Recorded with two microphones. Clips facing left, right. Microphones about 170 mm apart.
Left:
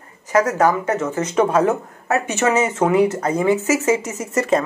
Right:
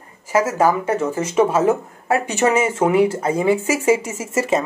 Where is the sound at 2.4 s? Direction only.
20° right (ahead or behind).